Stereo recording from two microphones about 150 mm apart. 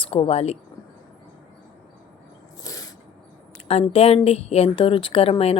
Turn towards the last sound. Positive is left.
turn(degrees=40)  # may be behind; listen again after turning